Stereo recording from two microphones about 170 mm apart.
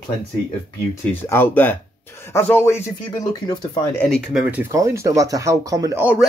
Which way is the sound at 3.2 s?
25° left (ahead or behind).